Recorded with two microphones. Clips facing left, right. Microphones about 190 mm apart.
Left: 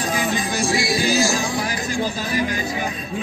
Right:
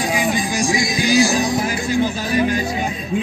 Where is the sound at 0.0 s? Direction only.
15° right (ahead or behind).